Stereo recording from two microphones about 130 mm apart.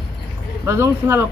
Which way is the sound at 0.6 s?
20° right (ahead or behind).